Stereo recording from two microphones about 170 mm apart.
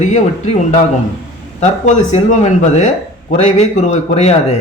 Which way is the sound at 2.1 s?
45° left (ahead or behind).